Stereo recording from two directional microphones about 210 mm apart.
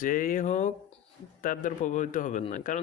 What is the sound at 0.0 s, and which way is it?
Speech, 40° left (ahead or behind).